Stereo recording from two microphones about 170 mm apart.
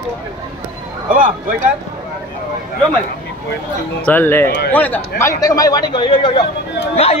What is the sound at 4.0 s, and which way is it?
Speech, 10° left (ahead or behind).